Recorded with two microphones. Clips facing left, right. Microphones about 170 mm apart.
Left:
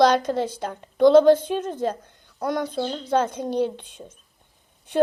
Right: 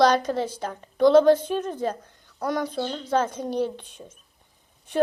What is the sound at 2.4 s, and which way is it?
Speech, 15° left (ahead or behind).